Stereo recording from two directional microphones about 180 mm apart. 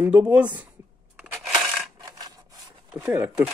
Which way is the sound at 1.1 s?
5° right (ahead or behind).